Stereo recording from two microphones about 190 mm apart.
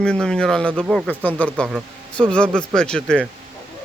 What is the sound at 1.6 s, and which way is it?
A man's voice, 5° right (ahead or behind).